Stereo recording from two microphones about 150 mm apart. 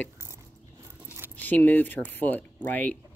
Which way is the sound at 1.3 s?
10° left (ahead or behind).